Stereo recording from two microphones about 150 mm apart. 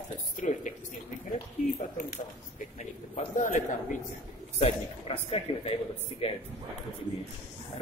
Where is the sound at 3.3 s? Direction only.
65° left (ahead or behind).